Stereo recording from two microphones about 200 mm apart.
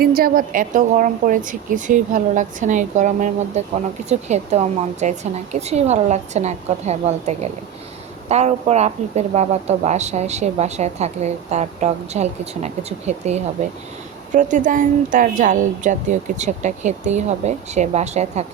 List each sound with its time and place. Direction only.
0.0 s speech: 50° right (ahead or behind)